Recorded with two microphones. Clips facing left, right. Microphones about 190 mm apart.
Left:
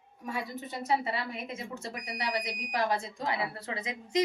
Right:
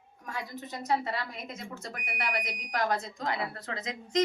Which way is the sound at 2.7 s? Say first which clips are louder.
Even; 5° left (ahead or behind).